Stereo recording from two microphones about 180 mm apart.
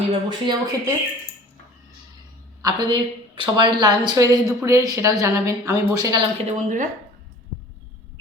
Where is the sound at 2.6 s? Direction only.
25° right (ahead or behind).